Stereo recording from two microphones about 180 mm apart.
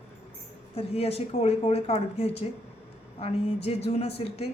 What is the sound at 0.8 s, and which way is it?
Speech, 35° left (ahead or behind).